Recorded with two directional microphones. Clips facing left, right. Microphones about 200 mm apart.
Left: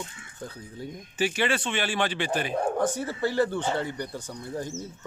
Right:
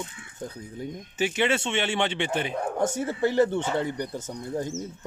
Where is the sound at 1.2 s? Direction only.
20° right (ahead or behind).